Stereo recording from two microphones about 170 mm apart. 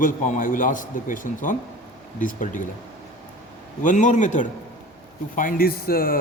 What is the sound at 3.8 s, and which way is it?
A man's voice, 45° left (ahead or behind).